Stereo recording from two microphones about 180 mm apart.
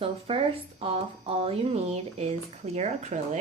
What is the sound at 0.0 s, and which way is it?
Speech, 30° right (ahead or behind).